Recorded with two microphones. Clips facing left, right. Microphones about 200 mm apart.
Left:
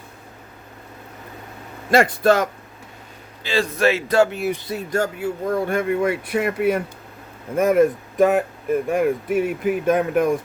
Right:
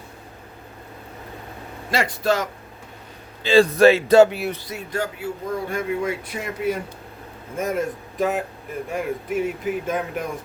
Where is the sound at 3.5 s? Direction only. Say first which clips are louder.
Right 6 dB; 35° right (ahead or behind).